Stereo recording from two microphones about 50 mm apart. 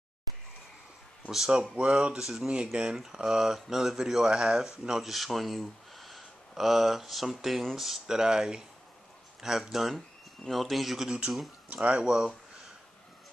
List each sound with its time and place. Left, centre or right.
1.3 s speech: centre
11.7 s speech: right